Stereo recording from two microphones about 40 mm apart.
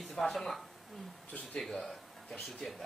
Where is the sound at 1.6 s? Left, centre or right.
Centre.